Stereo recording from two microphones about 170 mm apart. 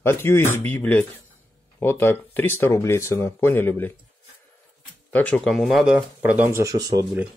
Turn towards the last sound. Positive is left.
turn(degrees=-20)  # may be behind; listen again after turning